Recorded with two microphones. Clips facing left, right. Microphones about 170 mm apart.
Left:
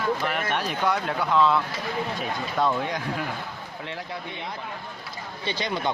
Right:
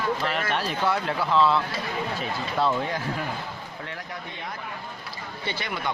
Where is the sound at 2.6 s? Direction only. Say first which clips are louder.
Even; 5° right (ahead or behind).